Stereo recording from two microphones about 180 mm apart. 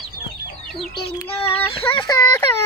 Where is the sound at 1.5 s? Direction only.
10° left (ahead or behind).